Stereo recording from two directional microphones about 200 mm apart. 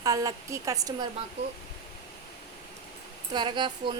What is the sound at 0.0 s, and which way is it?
Speech, 15° right (ahead or behind).